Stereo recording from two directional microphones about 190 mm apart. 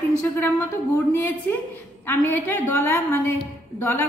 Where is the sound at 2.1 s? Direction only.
10° left (ahead or behind).